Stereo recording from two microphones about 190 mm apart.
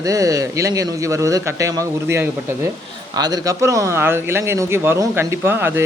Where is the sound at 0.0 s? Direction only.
15° right (ahead or behind).